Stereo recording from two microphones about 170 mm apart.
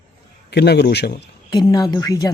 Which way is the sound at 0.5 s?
75° left (ahead or behind).